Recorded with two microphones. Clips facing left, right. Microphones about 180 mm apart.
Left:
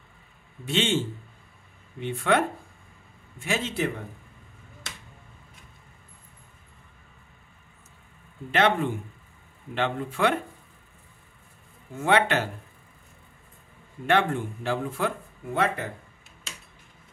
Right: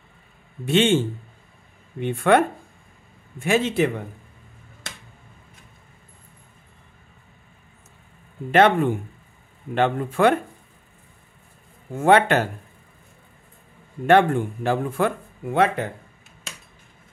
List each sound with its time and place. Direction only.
0.7 s speech: 55° right (ahead or behind)
8.5 s speech: 50° right (ahead or behind)
11.9 s speech: 50° right (ahead or behind)
14.0 s speech: 50° right (ahead or behind)